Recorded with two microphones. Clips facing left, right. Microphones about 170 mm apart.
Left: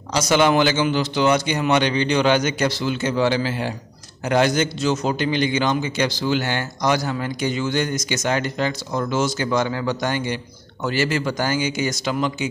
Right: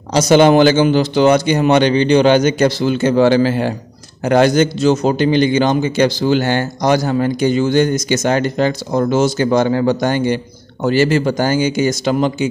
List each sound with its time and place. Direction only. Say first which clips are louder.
0.1 s a man's voice: right 8 dB; 30° right (ahead or behind)